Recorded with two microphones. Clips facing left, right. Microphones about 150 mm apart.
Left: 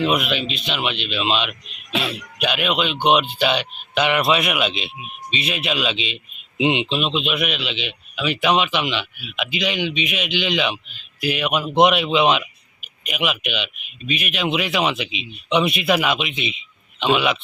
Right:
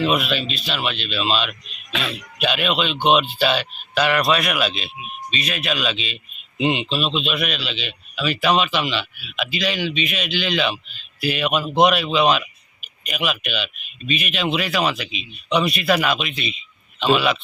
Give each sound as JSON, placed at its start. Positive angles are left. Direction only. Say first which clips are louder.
{"t": 0.0, "sound": "speech", "louder": "even", "side_deg": 15}